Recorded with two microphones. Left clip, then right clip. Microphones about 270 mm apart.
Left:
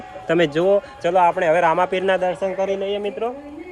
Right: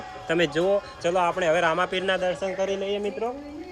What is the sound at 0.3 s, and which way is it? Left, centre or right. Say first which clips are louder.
A man's voice: left 6 dB; centre.